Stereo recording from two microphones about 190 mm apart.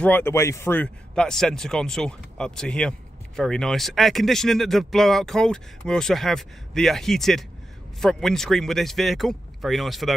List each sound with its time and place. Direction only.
0.0 s speech: 10° left (ahead or behind)